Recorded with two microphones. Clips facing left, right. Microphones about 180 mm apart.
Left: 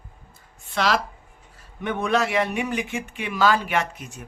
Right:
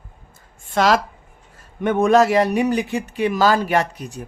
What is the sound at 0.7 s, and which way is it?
Speech, 45° right (ahead or behind).